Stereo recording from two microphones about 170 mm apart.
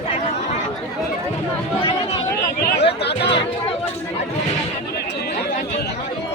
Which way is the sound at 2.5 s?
70° left (ahead or behind).